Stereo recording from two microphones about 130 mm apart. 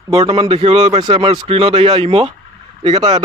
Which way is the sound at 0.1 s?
45° right (ahead or behind).